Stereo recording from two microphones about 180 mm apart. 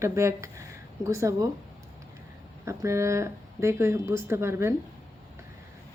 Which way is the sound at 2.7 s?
15° right (ahead or behind).